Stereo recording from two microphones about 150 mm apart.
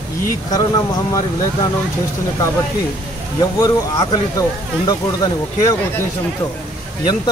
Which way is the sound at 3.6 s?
30° left (ahead or behind).